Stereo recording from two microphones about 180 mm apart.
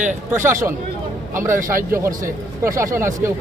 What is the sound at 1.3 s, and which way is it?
A man's voice, 15° right (ahead or behind).